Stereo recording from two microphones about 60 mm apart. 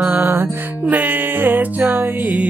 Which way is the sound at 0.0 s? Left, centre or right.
Right.